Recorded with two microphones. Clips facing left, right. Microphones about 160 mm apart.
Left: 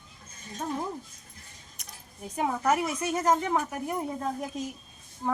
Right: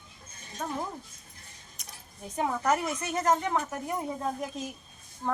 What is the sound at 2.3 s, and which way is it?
A woman's voice, 10° left (ahead or behind).